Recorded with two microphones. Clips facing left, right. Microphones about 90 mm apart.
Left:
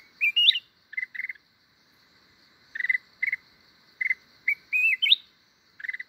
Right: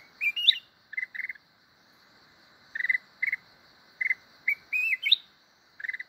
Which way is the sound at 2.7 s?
15° right (ahead or behind).